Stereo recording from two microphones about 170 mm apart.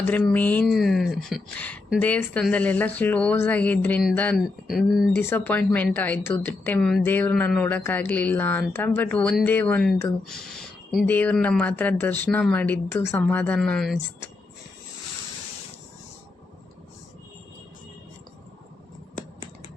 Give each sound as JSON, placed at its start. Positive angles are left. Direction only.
{"t": 0.0, "sound": "speech", "side_deg": 10}
{"t": 5.1, "sound": "speech", "side_deg": 10}
{"t": 19.1, "sound": "a sound", "side_deg": 45}